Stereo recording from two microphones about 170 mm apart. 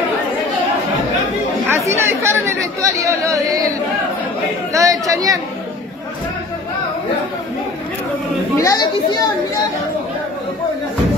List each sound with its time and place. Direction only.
1.7 s chatter: 15° right (ahead or behind)
4.7 s chatter: 20° right (ahead or behind)
8.5 s a child's voice: 20° left (ahead or behind)